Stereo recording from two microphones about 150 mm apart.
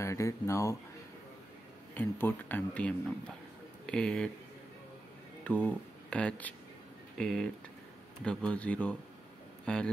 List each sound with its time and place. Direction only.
0.0 s speech: 20° left (ahead or behind)
2.0 s speech: 15° left (ahead or behind)
5.4 s speech: 10° left (ahead or behind)